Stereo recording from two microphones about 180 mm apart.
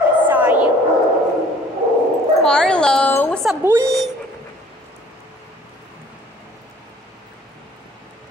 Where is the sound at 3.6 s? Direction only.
15° right (ahead or behind).